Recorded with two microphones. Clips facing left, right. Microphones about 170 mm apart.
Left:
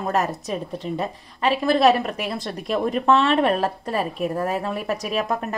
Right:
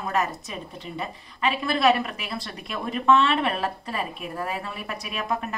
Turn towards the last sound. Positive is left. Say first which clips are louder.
# left 5 dB
turn(degrees=40)  # may be behind; listen again after turning